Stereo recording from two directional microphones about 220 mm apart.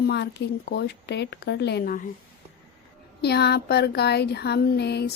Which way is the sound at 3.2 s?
50° left (ahead or behind).